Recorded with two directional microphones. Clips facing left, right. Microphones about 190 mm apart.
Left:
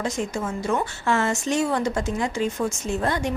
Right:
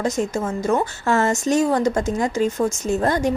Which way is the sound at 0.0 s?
40° right (ahead or behind).